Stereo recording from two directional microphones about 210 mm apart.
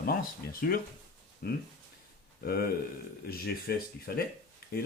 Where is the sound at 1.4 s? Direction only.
45° left (ahead or behind).